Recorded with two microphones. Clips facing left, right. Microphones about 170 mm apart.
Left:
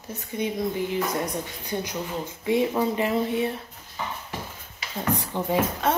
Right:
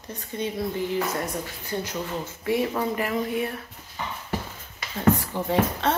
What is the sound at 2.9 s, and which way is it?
Speech, 25° left (ahead or behind).